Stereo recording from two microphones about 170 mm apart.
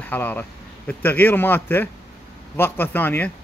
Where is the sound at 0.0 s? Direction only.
10° left (ahead or behind).